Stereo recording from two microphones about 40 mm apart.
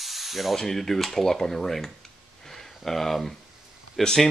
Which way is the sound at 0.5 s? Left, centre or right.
Centre.